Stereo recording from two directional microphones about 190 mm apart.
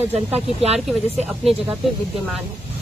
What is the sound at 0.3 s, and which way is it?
Speech, 35° right (ahead or behind).